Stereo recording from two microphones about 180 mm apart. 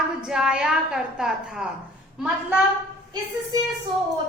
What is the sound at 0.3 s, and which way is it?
A woman's voice, 5° right (ahead or behind).